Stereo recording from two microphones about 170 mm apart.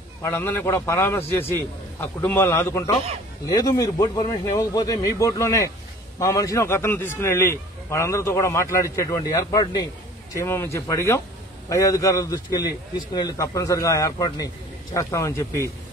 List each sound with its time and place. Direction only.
0.2 s a man's voice: 15° left (ahead or behind)